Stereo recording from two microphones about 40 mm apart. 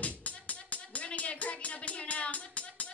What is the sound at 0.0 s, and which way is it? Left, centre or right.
Music, left.